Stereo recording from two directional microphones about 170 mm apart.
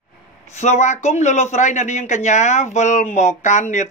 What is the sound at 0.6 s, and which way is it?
Speech, 40° left (ahead or behind).